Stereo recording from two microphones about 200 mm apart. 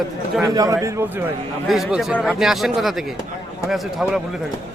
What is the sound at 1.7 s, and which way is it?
A man's voice, centre (ahead or behind).